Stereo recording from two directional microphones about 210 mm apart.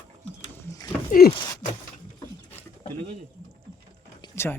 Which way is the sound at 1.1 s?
45° left (ahead or behind).